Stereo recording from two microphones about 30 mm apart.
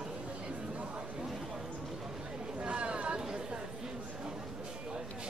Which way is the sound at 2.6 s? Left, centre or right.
Right.